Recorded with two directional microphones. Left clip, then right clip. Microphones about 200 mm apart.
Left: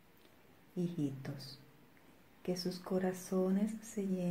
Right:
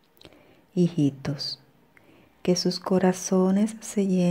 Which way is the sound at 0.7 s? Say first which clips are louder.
Right 15 dB; 45° right (ahead or behind).